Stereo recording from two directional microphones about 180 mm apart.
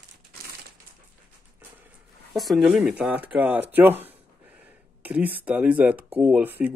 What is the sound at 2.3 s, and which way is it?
Speech, centre (ahead or behind).